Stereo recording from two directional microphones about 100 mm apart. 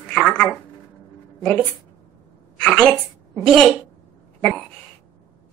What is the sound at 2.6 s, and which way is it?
Speech, 10° left (ahead or behind).